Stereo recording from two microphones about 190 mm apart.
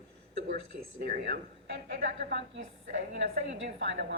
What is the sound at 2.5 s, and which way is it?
A woman's voice, 70° right (ahead or behind).